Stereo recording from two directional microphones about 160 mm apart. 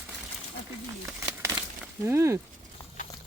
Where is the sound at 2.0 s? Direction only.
15° right (ahead or behind).